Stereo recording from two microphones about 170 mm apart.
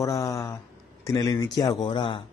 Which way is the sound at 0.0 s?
20° left (ahead or behind).